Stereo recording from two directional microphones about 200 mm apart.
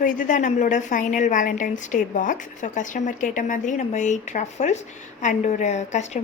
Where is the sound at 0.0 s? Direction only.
40° left (ahead or behind).